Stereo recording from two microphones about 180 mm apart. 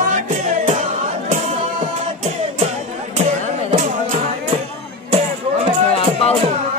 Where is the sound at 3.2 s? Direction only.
35° right (ahead or behind).